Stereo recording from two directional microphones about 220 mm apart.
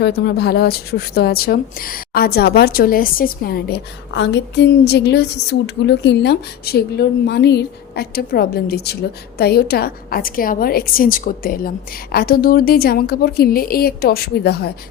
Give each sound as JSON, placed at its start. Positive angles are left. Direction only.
{"t": 0.0, "sound": "a woman's voice", "side_deg": 45}